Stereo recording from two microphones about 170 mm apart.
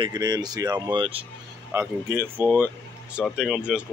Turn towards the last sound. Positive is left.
turn(degrees=-5)  # may be behind; listen again after turning